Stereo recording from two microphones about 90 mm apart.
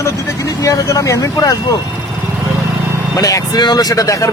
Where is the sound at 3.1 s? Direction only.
40° left (ahead or behind).